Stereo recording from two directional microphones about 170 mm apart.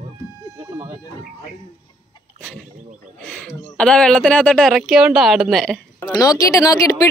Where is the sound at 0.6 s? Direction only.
20° right (ahead or behind).